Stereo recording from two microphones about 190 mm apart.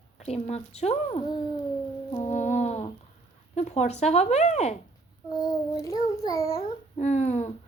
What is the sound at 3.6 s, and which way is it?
A woman's voice, 35° left (ahead or behind).